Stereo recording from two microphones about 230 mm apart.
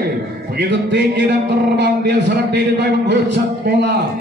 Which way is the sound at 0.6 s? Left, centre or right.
Right.